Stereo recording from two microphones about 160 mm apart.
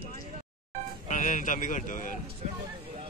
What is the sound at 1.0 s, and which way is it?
Speech, 50° left (ahead or behind).